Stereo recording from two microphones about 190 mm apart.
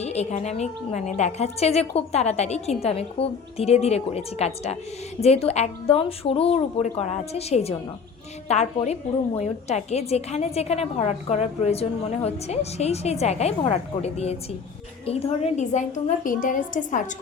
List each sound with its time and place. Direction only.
0.0 s a woman's voice: 35° left (ahead or behind)